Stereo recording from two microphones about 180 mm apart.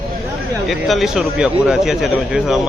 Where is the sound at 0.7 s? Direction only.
Centre (ahead or behind).